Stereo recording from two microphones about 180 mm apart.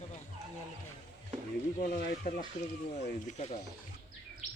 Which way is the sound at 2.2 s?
50° left (ahead or behind).